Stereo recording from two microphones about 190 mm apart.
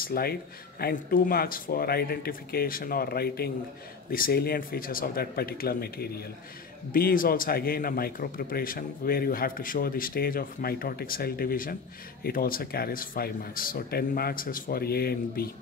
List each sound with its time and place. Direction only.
0.0 s a man's voice: 50° left (ahead or behind)